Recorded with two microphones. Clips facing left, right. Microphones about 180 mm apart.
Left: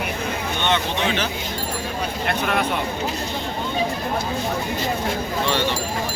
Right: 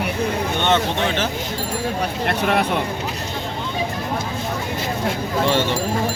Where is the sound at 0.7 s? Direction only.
45° right (ahead or behind).